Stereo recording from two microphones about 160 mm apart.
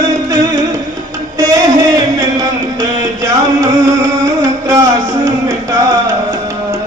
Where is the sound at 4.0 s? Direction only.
20° right (ahead or behind).